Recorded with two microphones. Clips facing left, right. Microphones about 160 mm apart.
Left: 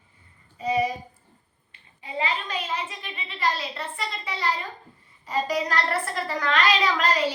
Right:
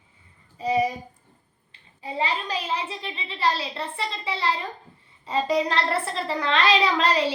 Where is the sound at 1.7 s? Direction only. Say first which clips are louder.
Right 2 dB; 30° right (ahead or behind).